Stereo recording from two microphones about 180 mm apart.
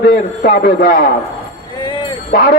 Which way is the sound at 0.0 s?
55° left (ahead or behind).